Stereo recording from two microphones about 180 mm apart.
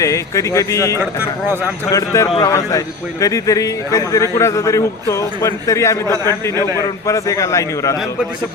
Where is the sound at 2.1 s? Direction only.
20° left (ahead or behind).